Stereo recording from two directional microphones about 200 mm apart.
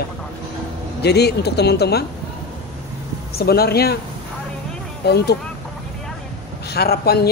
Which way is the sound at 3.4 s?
50° left (ahead or behind).